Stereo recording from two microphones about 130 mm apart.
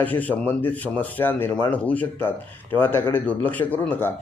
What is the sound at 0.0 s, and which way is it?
A man's voice, 10° left (ahead or behind).